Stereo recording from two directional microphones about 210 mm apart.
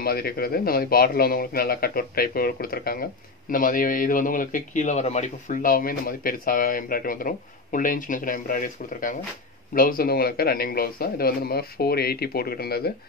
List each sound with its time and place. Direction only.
0.0 s a man's voice: 45° left (ahead or behind)